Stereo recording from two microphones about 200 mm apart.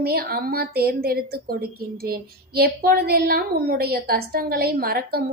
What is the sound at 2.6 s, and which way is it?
Speech, 50° right (ahead or behind).